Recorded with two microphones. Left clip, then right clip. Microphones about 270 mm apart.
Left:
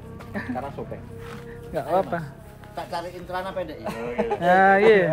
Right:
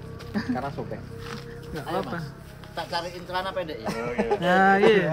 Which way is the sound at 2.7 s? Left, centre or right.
Centre.